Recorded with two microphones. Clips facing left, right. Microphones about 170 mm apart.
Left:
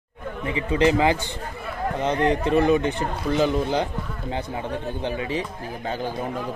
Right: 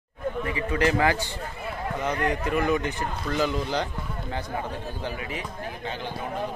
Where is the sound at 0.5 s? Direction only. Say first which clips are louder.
Left 5 dB; 20° left (ahead or behind).